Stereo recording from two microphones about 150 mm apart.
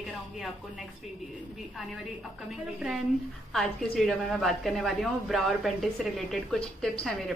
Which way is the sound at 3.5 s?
5° left (ahead or behind).